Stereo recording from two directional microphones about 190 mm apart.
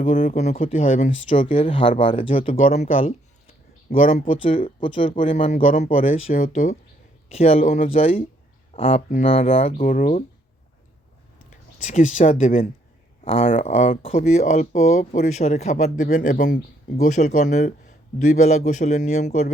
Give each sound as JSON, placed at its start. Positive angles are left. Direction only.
{"t": 0.2, "sound": "speech", "side_deg": 45}
{"t": 2.5, "sound": "speech", "side_deg": 40}
{"t": 4.3, "sound": "speech", "side_deg": 30}
{"t": 5.5, "sound": "speech", "side_deg": 45}
{"t": 7.3, "sound": "speech", "side_deg": 30}
{"t": 7.6, "sound": "speech", "side_deg": 45}
{"t": 7.9, "sound": "speech", "side_deg": 30}
{"t": 9.7, "sound": "speech", "side_deg": 45}
{"t": 11.9, "sound": "speech", "side_deg": 40}
{"t": 13.2, "sound": "speech", "side_deg": 30}